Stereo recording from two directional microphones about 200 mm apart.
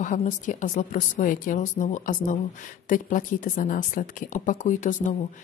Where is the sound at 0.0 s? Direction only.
40° left (ahead or behind).